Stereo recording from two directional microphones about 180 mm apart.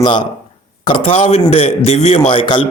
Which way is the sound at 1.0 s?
35° left (ahead or behind).